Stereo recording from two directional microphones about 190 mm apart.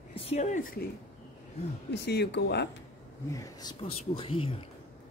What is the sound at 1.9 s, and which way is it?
Speech, 65° left (ahead or behind).